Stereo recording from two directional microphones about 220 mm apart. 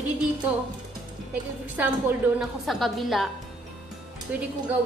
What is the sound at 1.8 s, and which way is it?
A woman's voice, 5° right (ahead or behind).